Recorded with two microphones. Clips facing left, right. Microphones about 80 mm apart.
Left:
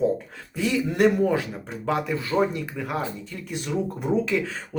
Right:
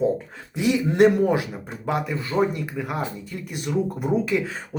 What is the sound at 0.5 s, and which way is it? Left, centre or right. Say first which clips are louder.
Speech: right 4 dB; centre.